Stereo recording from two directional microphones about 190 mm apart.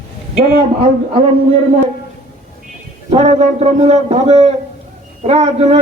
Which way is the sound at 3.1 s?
35° right (ahead or behind).